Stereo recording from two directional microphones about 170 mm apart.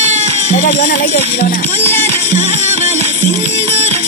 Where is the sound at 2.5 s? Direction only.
40° right (ahead or behind).